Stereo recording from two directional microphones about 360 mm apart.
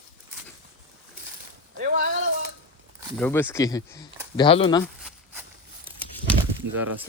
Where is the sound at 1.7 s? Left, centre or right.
Right.